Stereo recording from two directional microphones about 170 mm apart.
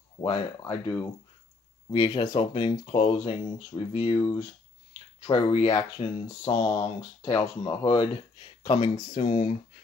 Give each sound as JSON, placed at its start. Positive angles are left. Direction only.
{"t": 0.6, "sound": "speech", "side_deg": 20}
{"t": 5.2, "sound": "speech", "side_deg": 30}